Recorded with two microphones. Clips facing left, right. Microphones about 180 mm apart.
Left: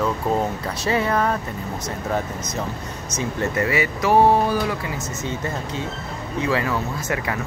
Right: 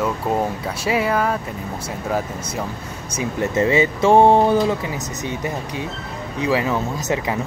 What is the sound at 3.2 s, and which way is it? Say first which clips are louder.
Speech: right 3 dB; 20° right (ahead or behind).